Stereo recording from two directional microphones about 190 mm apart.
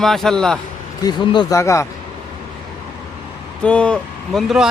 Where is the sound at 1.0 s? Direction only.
25° left (ahead or behind).